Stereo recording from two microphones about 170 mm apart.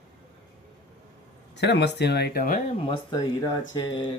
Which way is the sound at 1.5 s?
90° left.